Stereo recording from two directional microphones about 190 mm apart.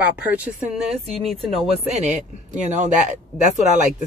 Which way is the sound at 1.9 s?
40° right (ahead or behind).